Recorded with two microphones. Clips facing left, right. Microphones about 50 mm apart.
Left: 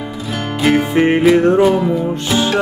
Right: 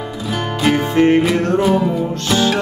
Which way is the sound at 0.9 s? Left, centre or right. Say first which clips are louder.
Right 1 dB; centre.